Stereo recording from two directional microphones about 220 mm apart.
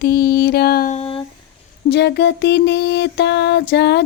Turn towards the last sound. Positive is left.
turn(degrees=50)  # may be behind; listen again after turning